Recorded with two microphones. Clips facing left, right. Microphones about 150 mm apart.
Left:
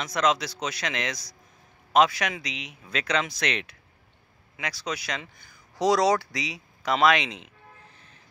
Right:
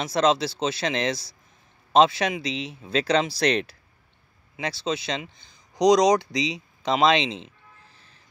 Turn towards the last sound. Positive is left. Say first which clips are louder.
# right 2 dB
turn(degrees=-25)  # may be behind; listen again after turning